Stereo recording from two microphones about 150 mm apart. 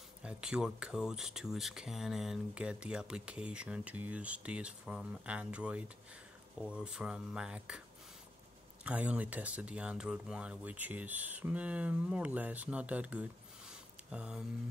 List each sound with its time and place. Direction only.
0.2 s speech: 5° right (ahead or behind)
8.8 s speech: 10° right (ahead or behind)